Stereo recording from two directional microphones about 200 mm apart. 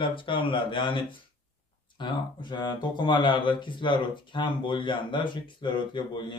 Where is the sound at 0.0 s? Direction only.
25° left (ahead or behind).